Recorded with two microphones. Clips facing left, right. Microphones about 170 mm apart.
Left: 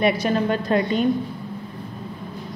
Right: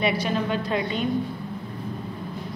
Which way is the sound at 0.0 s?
50° left (ahead or behind).